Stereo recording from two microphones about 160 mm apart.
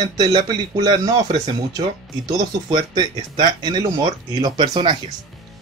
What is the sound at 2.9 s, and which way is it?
Speech, 25° right (ahead or behind).